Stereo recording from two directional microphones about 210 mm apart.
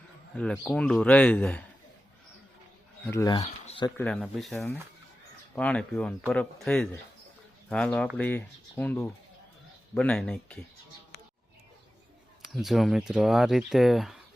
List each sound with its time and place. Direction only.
0.3 s speech: 5° left (ahead or behind)
3.1 s speech: 15° left (ahead or behind)
3.9 s speech: 5° left (ahead or behind)
12.5 s speech: centre (ahead or behind)